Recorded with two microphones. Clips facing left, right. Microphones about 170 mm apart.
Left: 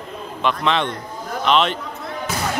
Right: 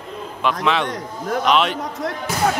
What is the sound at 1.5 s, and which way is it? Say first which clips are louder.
Speech: left 1 dB; 5° right (ahead or behind).